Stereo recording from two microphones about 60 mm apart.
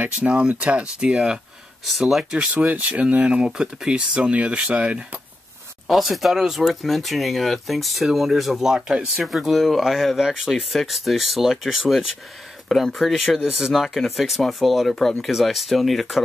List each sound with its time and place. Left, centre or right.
0.0 s speech: centre
1.9 s speech: centre
2.3 s speech: right
5.9 s speech: centre